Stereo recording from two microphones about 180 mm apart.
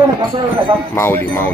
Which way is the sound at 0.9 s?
10° left (ahead or behind).